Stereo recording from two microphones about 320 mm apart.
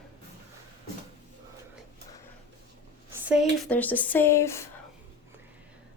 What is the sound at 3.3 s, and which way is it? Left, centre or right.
Speech, centre.